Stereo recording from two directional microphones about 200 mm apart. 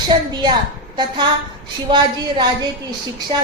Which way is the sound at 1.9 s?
20° right (ahead or behind).